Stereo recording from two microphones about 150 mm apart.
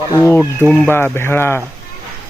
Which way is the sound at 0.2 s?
15° left (ahead or behind).